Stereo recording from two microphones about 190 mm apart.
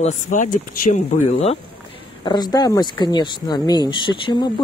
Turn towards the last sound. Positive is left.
turn(degrees=25)  # may be behind; listen again after turning